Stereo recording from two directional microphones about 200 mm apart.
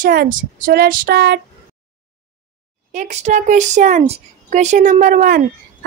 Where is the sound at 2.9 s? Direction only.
35° right (ahead or behind).